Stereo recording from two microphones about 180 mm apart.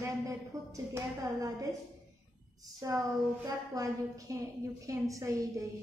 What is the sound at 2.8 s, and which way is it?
A woman's voice, 20° right (ahead or behind).